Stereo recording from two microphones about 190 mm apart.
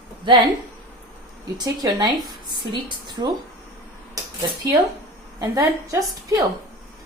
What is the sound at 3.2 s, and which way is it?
Speech, 20° right (ahead or behind).